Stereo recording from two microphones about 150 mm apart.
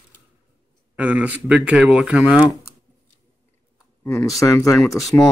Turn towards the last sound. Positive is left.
turn(degrees=20)  # may be behind; listen again after turning